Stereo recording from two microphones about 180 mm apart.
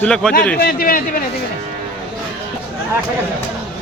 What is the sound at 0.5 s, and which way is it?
Speech, 55° left (ahead or behind).